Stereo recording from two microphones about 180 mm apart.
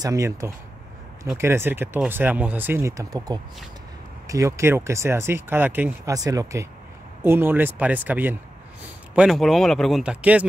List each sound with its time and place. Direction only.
0.0 s speech: 15° right (ahead or behind)